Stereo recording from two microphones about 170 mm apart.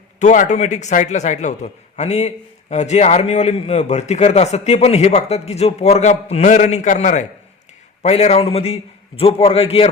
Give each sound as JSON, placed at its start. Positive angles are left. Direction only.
{"t": 0.2, "sound": "a man's voice", "side_deg": 45}